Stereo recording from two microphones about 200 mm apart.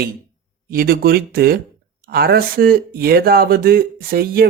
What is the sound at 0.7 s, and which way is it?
Speech, 45° right (ahead or behind).